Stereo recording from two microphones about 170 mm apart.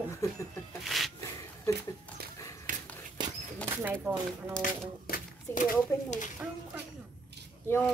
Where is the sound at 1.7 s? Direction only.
20° left (ahead or behind).